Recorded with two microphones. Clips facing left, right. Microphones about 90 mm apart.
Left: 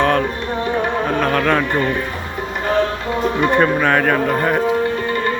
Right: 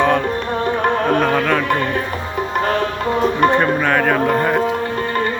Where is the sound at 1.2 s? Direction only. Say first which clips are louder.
Even; 5° right (ahead or behind).